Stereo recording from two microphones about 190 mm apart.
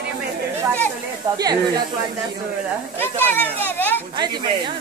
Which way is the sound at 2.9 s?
10° left (ahead or behind).